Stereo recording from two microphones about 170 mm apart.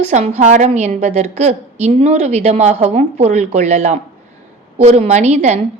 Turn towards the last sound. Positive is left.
turn(degrees=-40)  # may be behind; listen again after turning